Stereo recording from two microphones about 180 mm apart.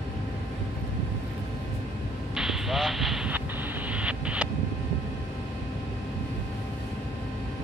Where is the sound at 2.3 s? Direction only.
Centre (ahead or behind).